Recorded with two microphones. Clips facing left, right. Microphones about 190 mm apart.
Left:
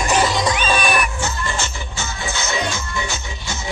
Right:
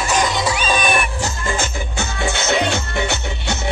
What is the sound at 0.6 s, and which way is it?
Music, 20° right (ahead or behind).